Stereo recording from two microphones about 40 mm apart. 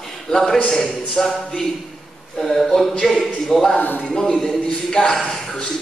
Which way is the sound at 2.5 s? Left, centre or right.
Centre.